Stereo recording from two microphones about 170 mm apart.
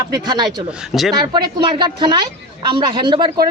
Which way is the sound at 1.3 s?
25° right (ahead or behind).